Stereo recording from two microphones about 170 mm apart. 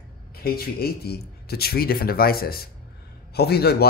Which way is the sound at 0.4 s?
65° left (ahead or behind).